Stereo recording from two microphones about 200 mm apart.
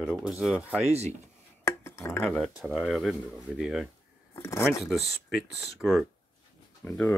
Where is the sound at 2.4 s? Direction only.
Centre (ahead or behind).